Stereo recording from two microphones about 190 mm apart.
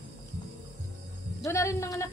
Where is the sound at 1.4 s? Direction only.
15° left (ahead or behind).